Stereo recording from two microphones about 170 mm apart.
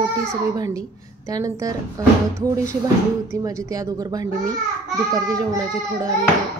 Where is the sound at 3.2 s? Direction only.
20° right (ahead or behind).